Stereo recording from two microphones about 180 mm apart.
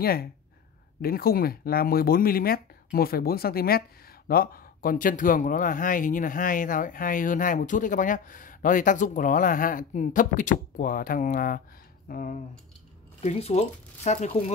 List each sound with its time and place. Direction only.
0.0 s speech: 55° left (ahead or behind)
13.2 s speech: 35° left (ahead or behind)